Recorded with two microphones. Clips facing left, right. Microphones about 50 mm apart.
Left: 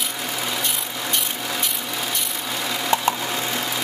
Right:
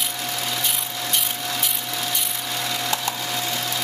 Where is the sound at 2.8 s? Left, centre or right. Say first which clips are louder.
Left 5 dB; left.